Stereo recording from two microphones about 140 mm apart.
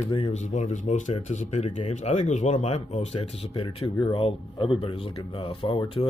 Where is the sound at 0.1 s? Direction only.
50° left (ahead or behind).